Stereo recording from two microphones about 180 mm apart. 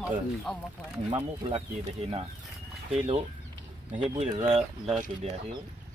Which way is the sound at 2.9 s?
35° right (ahead or behind).